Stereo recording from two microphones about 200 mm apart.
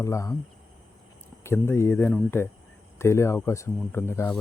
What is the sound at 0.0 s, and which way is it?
Speech, 15° left (ahead or behind).